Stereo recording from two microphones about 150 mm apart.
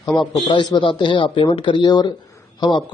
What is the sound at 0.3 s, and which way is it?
A man's voice, 30° left (ahead or behind).